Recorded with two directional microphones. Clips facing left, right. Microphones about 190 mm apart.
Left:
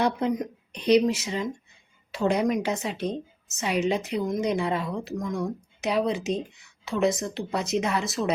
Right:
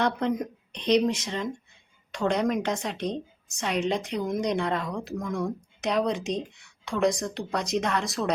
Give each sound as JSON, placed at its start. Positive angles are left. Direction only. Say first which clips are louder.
{"t": 0.0, "sound": "a woman's voice", "louder": "left 1 dB", "side_deg": 5}